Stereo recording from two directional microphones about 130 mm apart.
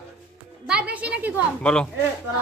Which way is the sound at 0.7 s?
10° right (ahead or behind).